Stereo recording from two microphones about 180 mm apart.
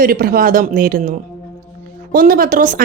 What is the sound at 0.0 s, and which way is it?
A woman's voice, 55° right (ahead or behind).